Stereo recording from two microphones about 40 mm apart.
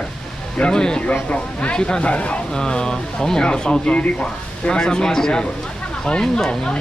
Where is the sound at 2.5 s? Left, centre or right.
Centre.